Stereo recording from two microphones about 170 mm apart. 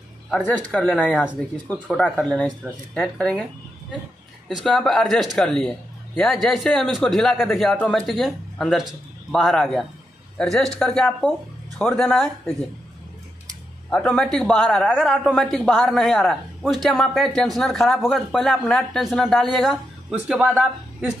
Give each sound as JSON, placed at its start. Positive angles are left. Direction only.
{"t": 0.4, "sound": "speech", "side_deg": 10}
{"t": 4.5, "sound": "speech", "side_deg": 0}
{"t": 13.8, "sound": "speech", "side_deg": 5}